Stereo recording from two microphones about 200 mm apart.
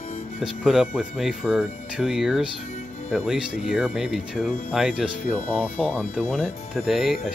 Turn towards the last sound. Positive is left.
turn(degrees=-5)  # may be behind; listen again after turning